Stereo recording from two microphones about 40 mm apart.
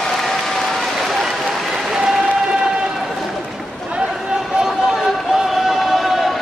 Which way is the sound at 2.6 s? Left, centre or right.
Centre.